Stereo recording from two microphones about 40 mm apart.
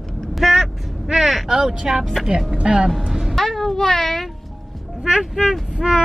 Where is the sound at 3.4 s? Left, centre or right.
Centre.